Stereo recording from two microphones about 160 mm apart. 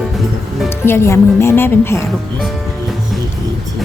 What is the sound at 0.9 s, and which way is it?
A woman's voice, 15° left (ahead or behind).